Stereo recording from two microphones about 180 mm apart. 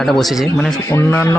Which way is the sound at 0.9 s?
15° left (ahead or behind).